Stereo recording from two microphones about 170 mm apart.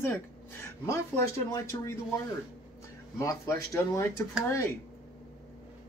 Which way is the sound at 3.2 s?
20° left (ahead or behind).